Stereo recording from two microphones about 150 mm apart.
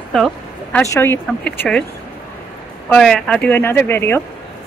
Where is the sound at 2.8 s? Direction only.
5° left (ahead or behind).